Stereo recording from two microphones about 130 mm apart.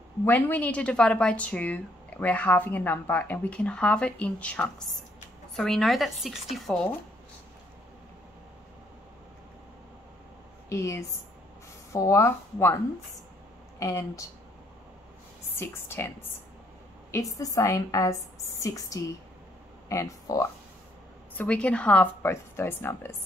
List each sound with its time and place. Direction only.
0.2 s a woman's voice: 15° left (ahead or behind)
10.7 s a woman's voice: 20° left (ahead or behind)
15.6 s a woman's voice: 20° left (ahead or behind)
21.4 s speech: 10° left (ahead or behind)